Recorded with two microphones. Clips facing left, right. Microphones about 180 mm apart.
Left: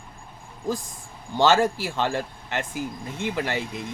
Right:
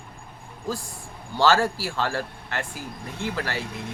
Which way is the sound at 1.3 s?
20° left (ahead or behind).